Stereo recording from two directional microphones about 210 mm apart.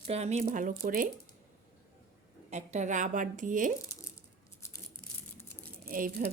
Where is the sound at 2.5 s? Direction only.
35° right (ahead or behind).